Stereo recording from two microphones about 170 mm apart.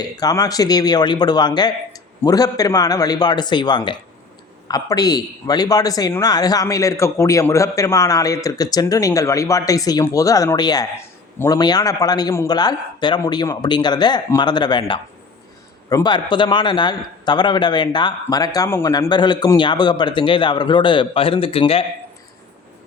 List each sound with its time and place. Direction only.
0.0 s a man's voice: 20° left (ahead or behind)